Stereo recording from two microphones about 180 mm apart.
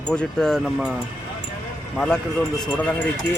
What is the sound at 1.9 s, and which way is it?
Speech, 5° left (ahead or behind).